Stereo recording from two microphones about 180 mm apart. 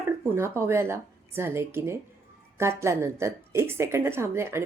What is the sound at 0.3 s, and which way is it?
A woman's voice, 15° right (ahead or behind).